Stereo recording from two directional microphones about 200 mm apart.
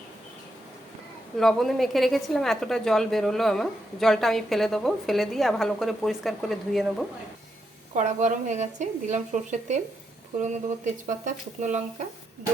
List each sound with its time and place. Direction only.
1.4 s a woman's voice: centre (ahead or behind)
7.9 s speech: 35° right (ahead or behind)